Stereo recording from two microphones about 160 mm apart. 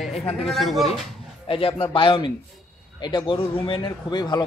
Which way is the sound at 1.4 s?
35° left (ahead or behind).